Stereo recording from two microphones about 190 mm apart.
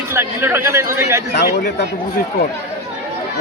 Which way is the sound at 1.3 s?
60° left (ahead or behind).